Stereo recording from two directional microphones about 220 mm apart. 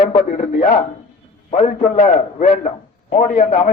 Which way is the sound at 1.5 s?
30° left (ahead or behind).